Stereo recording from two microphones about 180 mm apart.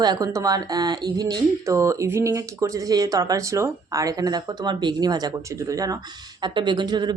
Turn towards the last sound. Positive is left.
turn(degrees=-25)  # may be behind; listen again after turning